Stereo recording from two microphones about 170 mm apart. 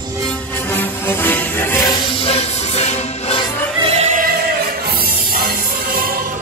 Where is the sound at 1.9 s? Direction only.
35° left (ahead or behind).